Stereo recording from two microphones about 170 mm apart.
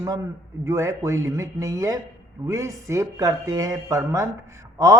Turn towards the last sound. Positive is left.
turn(degrees=-15)  # may be behind; listen again after turning